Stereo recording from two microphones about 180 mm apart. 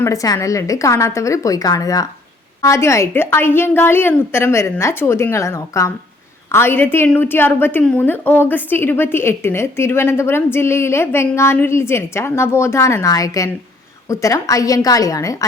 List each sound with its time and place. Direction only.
0.0 s a woman's voice: 20° left (ahead or behind)